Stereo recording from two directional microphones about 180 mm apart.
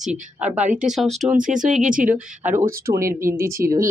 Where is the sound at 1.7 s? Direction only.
45° right (ahead or behind).